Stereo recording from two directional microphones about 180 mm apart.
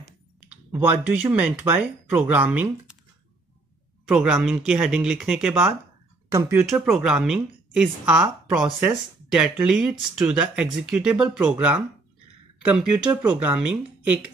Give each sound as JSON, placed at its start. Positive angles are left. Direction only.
{"t": 0.7, "sound": "speech", "side_deg": -10}
{"t": 4.1, "sound": "speech", "side_deg": -5}
{"t": 6.7, "sound": "speech", "side_deg": 0}